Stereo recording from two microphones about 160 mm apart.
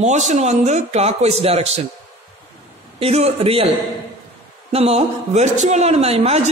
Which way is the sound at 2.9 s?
40° right (ahead or behind).